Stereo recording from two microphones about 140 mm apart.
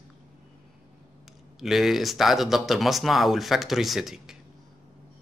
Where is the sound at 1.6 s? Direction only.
Centre (ahead or behind).